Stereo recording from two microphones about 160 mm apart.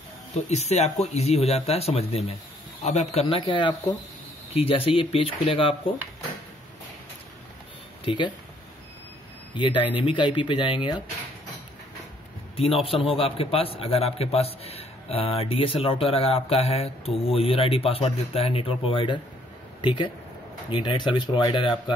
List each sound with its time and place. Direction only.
0.3 s a man's voice: 45° left (ahead or behind)
8.0 s speech: 30° left (ahead or behind)
9.5 s a man's voice: 30° left (ahead or behind)
12.5 s a man's voice: 35° left (ahead or behind)